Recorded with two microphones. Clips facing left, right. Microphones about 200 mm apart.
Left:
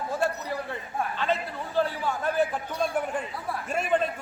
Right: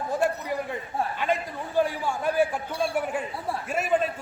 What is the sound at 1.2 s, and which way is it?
A man's voice, 15° right (ahead or behind).